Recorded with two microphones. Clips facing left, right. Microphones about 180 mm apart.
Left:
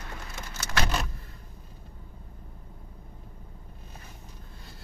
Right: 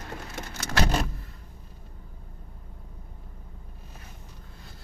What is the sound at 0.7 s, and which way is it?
Vehicle, 35° right (ahead or behind).